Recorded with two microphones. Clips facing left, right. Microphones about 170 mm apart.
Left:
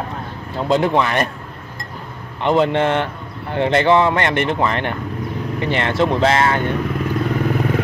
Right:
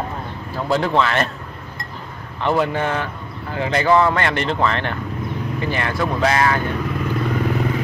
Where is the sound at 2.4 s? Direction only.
20° left (ahead or behind).